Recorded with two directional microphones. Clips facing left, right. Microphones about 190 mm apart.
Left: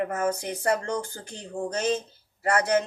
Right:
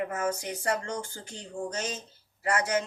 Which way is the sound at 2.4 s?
40° left (ahead or behind).